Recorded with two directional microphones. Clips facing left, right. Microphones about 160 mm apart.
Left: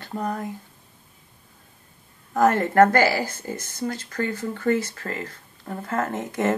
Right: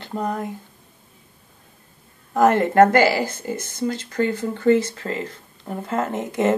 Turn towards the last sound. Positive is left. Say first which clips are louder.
# right 3 dB
turn(degrees=-20)  # may be behind; listen again after turning